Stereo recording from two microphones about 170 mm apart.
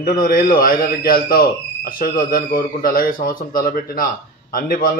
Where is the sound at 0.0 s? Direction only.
55° left (ahead or behind).